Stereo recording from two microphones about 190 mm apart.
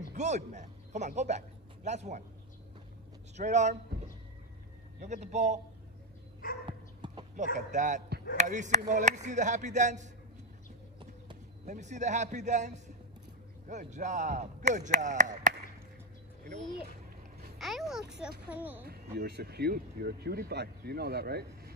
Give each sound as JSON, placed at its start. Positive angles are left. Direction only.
{"t": 0.1, "sound": "speech", "side_deg": -40}
{"t": 3.3, "sound": "speech", "side_deg": -40}
{"t": 5.0, "sound": "speech", "side_deg": -35}
{"t": 6.6, "sound": "dog", "side_deg": -25}
{"t": 7.5, "sound": "speech", "side_deg": -40}
{"t": 11.6, "sound": "speech", "side_deg": -40}
{"t": 17.6, "sound": "a child's voice", "side_deg": 0}
{"t": 18.9, "sound": "speech", "side_deg": -55}